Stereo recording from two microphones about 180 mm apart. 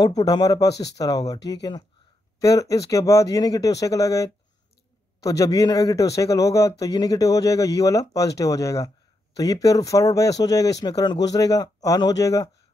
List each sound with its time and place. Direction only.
0.0 s speech: 20° left (ahead or behind)